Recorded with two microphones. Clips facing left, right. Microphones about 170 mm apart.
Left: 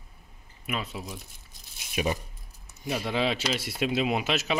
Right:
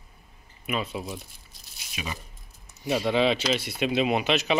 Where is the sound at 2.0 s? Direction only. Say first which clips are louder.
Left 8 dB; 45° left (ahead or behind).